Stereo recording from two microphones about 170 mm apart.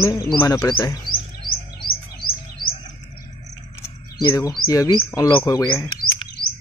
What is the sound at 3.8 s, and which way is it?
Bird, 20° left (ahead or behind).